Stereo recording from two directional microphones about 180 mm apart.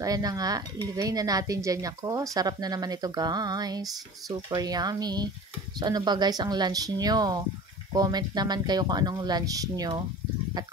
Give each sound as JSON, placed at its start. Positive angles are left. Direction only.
{"t": 0.0, "sound": "speech", "side_deg": -20}